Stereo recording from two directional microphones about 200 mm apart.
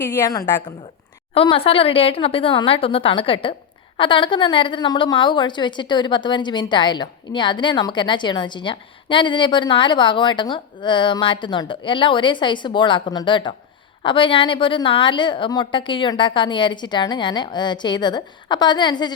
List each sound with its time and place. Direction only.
0.0 s a woman's voice: 10° left (ahead or behind)